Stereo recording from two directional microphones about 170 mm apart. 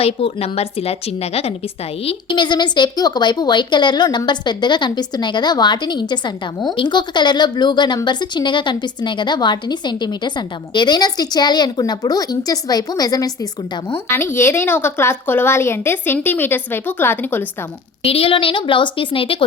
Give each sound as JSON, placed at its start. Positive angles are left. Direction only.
{"t": 0.0, "sound": "a woman's voice", "side_deg": 35}
{"t": 14.1, "sound": "a woman's voice", "side_deg": 15}
{"t": 18.0, "sound": "a woman's voice", "side_deg": 35}